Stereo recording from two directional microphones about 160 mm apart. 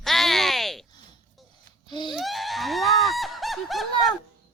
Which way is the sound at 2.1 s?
Centre (ahead or behind).